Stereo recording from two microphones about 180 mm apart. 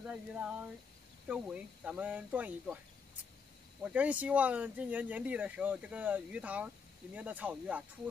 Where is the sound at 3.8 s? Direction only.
5° right (ahead or behind).